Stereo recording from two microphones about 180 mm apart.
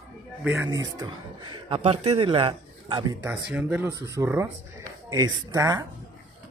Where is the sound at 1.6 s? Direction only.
30° right (ahead or behind).